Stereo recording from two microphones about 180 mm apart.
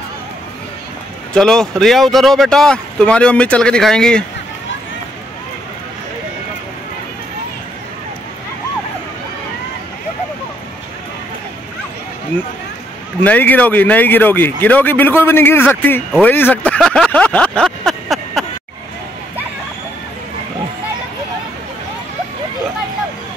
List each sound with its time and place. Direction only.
1.3 s speech: 5° left (ahead or behind)
13.2 s speech: 10° left (ahead or behind)
16.2 s a sound: 10° left (ahead or behind)